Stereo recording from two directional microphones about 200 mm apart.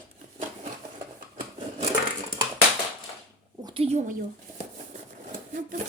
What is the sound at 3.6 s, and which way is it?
Speech, 25° right (ahead or behind).